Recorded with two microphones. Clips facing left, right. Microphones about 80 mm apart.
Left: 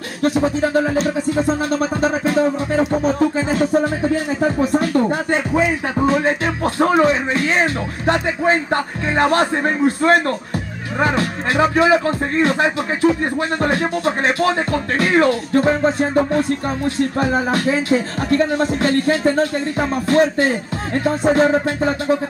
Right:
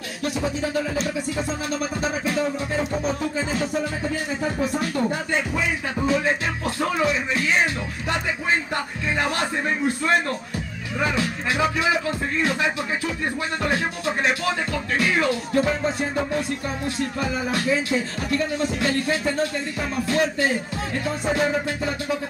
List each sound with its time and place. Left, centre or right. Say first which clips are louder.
0.2 s speech: left 9 dB; left